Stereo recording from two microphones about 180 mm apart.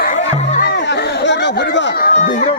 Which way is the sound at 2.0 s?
50° left (ahead or behind).